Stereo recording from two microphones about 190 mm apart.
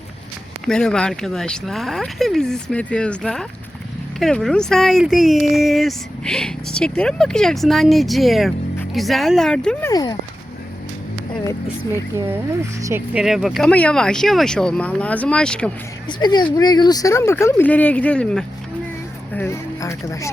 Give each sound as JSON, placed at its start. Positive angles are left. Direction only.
{"t": 0.6, "sound": "speech", "side_deg": 5}
{"t": 9.9, "sound": "speech", "side_deg": 20}
{"t": 12.8, "sound": "speech", "side_deg": -10}
{"t": 13.2, "sound": "speech", "side_deg": 0}
{"t": 16.0, "sound": "speech", "side_deg": 25}